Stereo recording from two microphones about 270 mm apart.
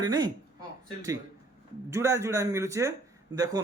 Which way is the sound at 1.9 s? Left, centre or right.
Centre.